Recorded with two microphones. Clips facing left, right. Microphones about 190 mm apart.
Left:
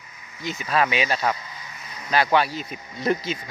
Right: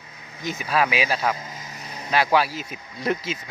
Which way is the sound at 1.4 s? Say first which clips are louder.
Right 3 dB; 45° right (ahead or behind).